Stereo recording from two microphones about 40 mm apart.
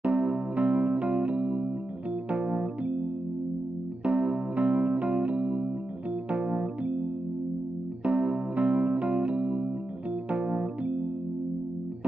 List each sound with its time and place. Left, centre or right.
0.0 s music: right
2.3 s keyboard: right
4.0 s music: right
8.0 s music: right
10.3 s keyboard: right